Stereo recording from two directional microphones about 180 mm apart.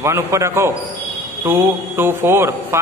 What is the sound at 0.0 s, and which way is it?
A man's voice, 15° right (ahead or behind).